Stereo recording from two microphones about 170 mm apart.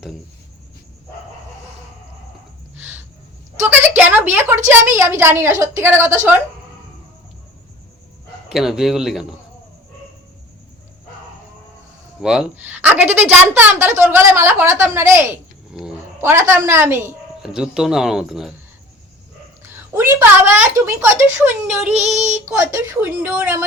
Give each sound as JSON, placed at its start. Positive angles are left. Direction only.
{"t": 3.6, "sound": "a sound", "side_deg": -10}
{"t": 5.2, "sound": "a woman's voice", "side_deg": -15}
{"t": 8.4, "sound": "speech", "side_deg": -5}
{"t": 12.2, "sound": "a woman's voice", "side_deg": -5}
{"t": 15.7, "sound": "cat", "side_deg": -5}
{"t": 16.5, "sound": "a woman's voice", "side_deg": -15}
{"t": 17.4, "sound": "speech", "side_deg": -5}
{"t": 19.6, "sound": "a woman's voice", "side_deg": -15}
{"t": 21.9, "sound": "child singing", "side_deg": -40}
{"t": 22.4, "sound": "a woman's voice", "side_deg": -15}